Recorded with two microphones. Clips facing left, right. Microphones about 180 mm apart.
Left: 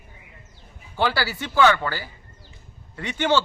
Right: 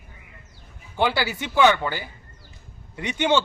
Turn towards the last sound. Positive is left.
turn(degrees=-15)  # may be behind; listen again after turning